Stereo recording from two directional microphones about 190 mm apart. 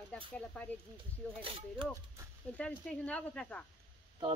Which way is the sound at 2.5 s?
5° left (ahead or behind).